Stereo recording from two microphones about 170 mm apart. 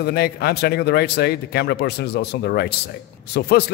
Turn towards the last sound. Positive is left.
turn(degrees=70)  # may be behind; listen again after turning